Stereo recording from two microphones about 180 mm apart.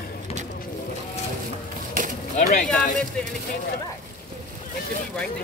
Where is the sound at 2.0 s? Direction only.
50° right (ahead or behind).